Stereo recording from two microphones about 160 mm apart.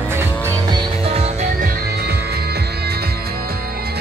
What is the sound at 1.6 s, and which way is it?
Music, 80° right.